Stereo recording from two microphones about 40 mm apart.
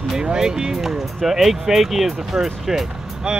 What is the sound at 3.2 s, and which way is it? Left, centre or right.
Speech, right.